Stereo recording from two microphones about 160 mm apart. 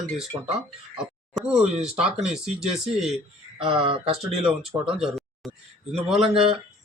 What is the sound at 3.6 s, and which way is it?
Speech, 30° right (ahead or behind).